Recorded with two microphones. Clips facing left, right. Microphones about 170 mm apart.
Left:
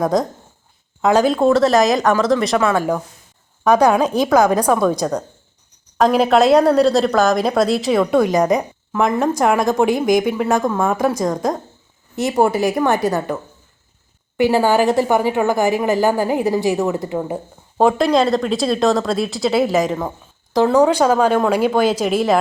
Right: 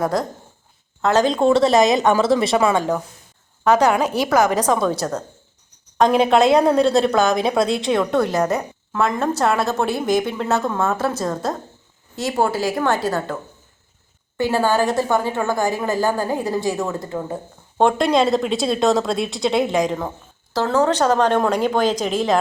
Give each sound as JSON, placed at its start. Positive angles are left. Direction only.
{"t": 0.0, "sound": "a woman's voice", "side_deg": 15}
{"t": 2.7, "sound": "a woman's voice", "side_deg": 10}
{"t": 6.0, "sound": "a woman's voice", "side_deg": 0}
{"t": 14.3, "sound": "a woman's voice", "side_deg": 15}
{"t": 17.7, "sound": "a woman's voice", "side_deg": 0}
{"t": 20.5, "sound": "a woman's voice", "side_deg": 15}